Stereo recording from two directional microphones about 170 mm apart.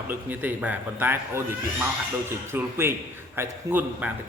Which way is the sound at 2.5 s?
15° right (ahead or behind).